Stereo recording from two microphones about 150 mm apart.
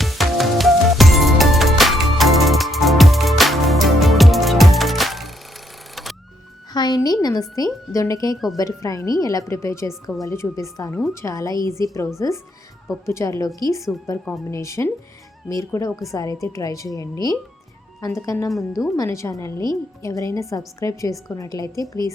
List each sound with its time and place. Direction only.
0.0 s music: centre (ahead or behind)
6.7 s a woman's voice: 25° left (ahead or behind)